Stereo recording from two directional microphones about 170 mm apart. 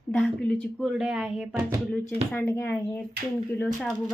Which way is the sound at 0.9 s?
5° right (ahead or behind).